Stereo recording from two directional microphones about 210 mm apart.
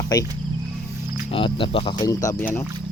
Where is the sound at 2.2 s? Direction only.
10° left (ahead or behind).